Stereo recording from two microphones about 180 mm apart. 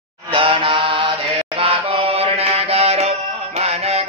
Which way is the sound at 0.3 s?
30° right (ahead or behind).